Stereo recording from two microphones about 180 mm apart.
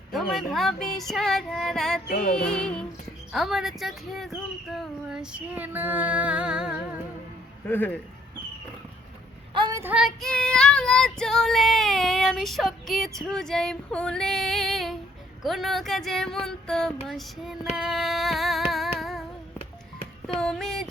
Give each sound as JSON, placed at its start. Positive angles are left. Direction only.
{"t": 0.1, "sound": "child singing", "side_deg": 0}
{"t": 4.7, "sound": "female singing", "side_deg": 0}
{"t": 7.7, "sound": "speech", "side_deg": 10}
{"t": 9.6, "sound": "a sound", "side_deg": -20}
{"t": 9.9, "sound": "child singing", "side_deg": 0}
{"t": 17.7, "sound": "music", "side_deg": 0}
{"t": 20.4, "sound": "a sound", "side_deg": 0}